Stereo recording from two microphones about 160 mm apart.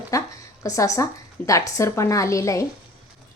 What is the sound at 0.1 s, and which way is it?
A woman's voice, 20° left (ahead or behind).